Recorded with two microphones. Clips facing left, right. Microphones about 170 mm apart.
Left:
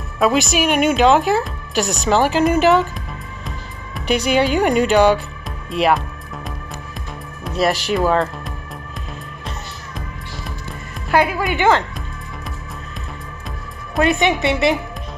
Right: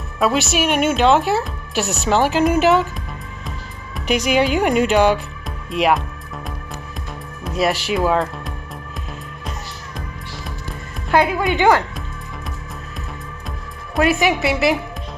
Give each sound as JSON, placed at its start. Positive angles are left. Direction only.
{"t": 0.2, "sound": "speech", "side_deg": 0}
{"t": 7.5, "sound": "music", "side_deg": 0}
{"t": 7.9, "sound": "speech", "side_deg": -5}
{"t": 11.1, "sound": "a woman's voice", "side_deg": 5}
{"t": 11.4, "sound": "a woman's voice", "side_deg": -15}
{"t": 13.9, "sound": "speech", "side_deg": -5}